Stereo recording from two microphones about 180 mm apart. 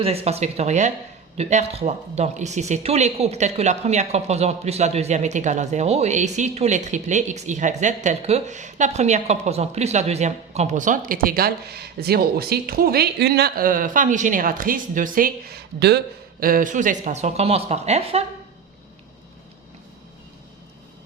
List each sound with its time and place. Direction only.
0.0 s speech: 35° right (ahead or behind); by 16.0 s 65° right (ahead or behind)
16.4 s speech: 50° right (ahead or behind)